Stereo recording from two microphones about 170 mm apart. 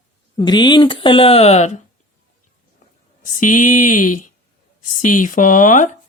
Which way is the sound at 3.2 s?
50° left (ahead or behind).